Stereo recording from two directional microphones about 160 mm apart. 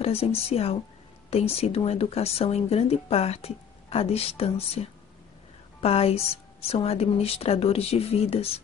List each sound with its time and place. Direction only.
0.0 s speech: 40° left (ahead or behind)